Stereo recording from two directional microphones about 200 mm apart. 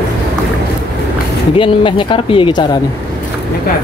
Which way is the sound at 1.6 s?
25° left (ahead or behind).